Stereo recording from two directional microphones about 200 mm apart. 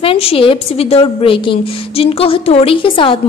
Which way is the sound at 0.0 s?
30° left (ahead or behind).